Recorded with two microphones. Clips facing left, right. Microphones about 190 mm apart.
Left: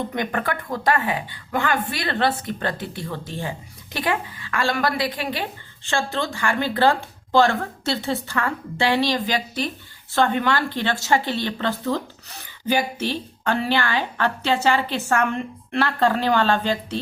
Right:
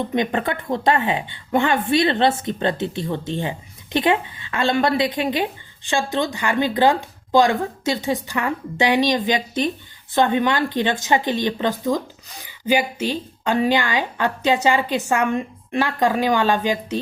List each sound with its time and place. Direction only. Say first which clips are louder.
0.1 s a woman's voice: right 4 dB; 20° right (ahead or behind)